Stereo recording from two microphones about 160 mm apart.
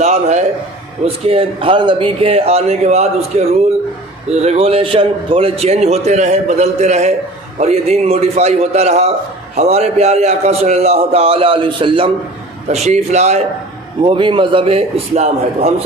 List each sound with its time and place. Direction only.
0.0 s a man's voice: 45° right (ahead or behind)
12.6 s a man's voice: 45° right (ahead or behind)
14.0 s a man's voice: 30° right (ahead or behind)